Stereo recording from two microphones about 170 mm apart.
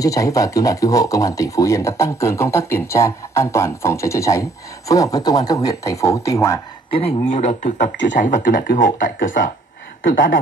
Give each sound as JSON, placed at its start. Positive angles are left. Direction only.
{"t": 0.0, "sound": "speech", "side_deg": 20}
{"t": 6.9, "sound": "a man's voice", "side_deg": 35}
{"t": 10.0, "sound": "speech", "side_deg": 90}